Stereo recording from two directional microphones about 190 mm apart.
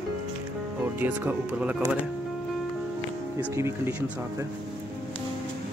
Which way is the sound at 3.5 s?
15° right (ahead or behind).